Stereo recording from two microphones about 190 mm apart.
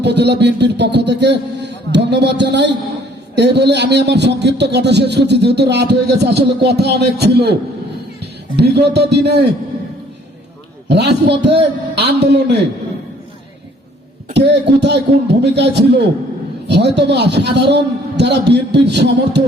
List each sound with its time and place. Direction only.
0.0 s a man's voice: 65° right (ahead or behind)
8.5 s a man's voice: 60° right (ahead or behind)
10.8 s a man's voice: 60° right (ahead or behind)
14.3 s a man's voice: 65° right (ahead or behind)